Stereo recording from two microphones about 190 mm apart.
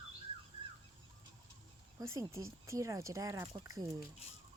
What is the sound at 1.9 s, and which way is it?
Speech, 15° right (ahead or behind).